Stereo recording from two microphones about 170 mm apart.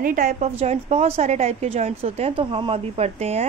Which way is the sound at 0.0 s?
55° right (ahead or behind).